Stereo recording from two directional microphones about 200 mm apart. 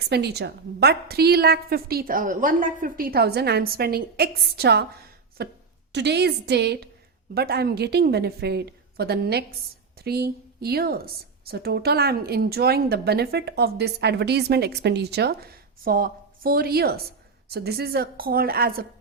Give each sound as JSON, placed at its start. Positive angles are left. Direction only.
{"t": 0.1, "sound": "a woman's voice", "side_deg": -55}